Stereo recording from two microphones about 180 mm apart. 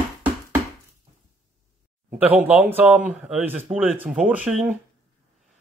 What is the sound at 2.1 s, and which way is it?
Speech, 10° right (ahead or behind).